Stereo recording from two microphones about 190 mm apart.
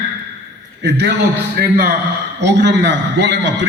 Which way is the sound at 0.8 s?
65° right (ahead or behind).